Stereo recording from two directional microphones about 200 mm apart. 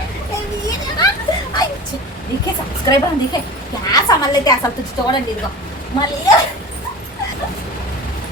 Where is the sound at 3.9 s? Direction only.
20° left (ahead or behind).